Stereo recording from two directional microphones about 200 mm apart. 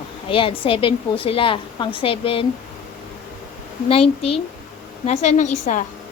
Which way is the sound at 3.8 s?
30° left (ahead or behind).